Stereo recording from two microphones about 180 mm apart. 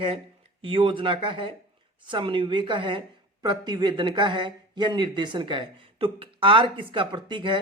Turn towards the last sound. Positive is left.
turn(degrees=-25)  # may be behind; listen again after turning